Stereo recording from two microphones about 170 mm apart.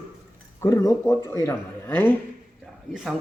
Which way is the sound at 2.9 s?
Centre (ahead or behind).